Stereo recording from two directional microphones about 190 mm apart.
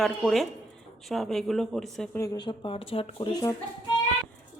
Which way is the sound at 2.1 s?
15° left (ahead or behind).